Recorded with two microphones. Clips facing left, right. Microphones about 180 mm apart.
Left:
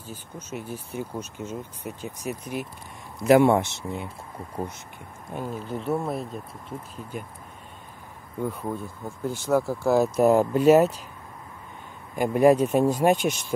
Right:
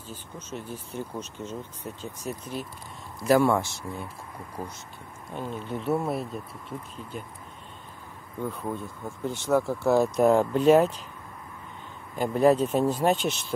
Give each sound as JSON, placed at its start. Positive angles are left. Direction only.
{"t": 0.1, "sound": "speech", "side_deg": 10}
{"t": 5.3, "sound": "speech", "side_deg": 10}
{"t": 8.4, "sound": "speech", "side_deg": 10}
{"t": 12.2, "sound": "speech", "side_deg": 10}